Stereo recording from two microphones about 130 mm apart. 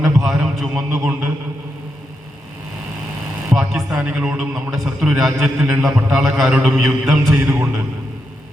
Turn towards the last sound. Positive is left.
turn(degrees=-10)  # may be behind; listen again after turning